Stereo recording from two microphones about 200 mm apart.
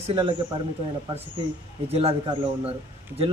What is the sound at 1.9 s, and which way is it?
Speech, 30° right (ahead or behind).